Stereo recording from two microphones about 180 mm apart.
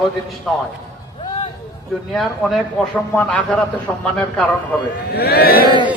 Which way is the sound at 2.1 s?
Centre (ahead or behind).